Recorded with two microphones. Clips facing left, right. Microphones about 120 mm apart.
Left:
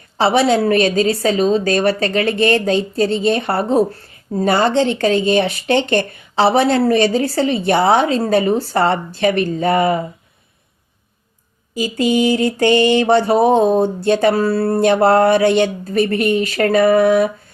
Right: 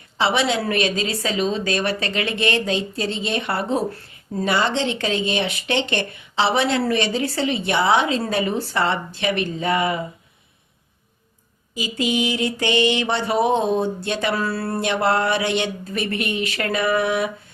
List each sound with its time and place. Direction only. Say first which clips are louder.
0.2 s speech: left 7 dB; 40° left (ahead or behind)
11.7 s speech: left 7 dB; 45° left (ahead or behind)